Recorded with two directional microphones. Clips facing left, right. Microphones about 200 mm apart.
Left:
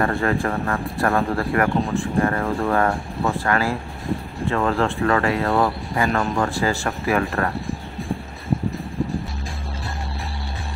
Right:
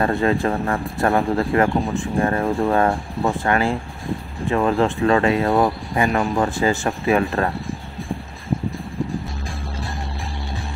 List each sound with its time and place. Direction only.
0.0 s speech: 20° right (ahead or behind)